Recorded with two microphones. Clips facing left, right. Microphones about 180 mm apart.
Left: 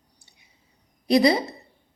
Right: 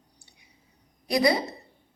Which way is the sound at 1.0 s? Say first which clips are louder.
Left 5 dB; 25° left (ahead or behind).